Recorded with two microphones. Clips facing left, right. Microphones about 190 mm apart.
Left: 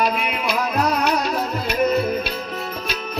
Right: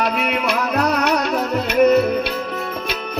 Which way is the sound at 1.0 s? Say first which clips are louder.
Right 2 dB; 65° right (ahead or behind).